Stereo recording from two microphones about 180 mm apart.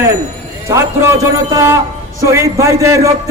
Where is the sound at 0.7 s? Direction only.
15° right (ahead or behind).